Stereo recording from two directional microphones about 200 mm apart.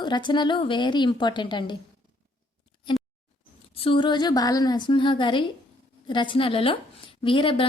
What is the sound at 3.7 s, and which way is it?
A woman's voice, 25° left (ahead or behind).